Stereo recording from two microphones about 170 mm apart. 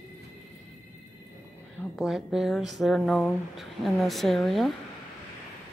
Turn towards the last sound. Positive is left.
turn(degrees=0)  # may be behind; listen again after turning